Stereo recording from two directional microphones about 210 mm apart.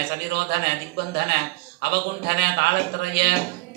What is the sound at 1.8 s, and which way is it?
A man's voice, 50° right (ahead or behind).